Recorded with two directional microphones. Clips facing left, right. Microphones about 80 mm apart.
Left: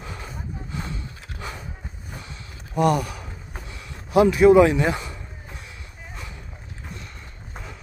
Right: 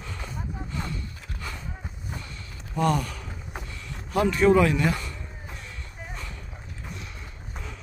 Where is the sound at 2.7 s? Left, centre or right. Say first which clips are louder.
Left 4 dB; centre.